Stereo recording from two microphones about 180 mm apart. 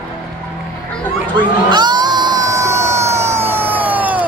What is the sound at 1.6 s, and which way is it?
Crowd, 25° right (ahead or behind).